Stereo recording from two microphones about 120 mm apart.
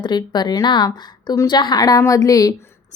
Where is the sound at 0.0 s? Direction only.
35° left (ahead or behind).